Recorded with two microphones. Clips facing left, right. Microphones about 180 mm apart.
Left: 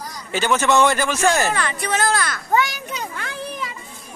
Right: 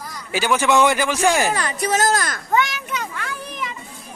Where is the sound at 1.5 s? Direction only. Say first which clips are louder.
Right 2 dB; 40° right (ahead or behind).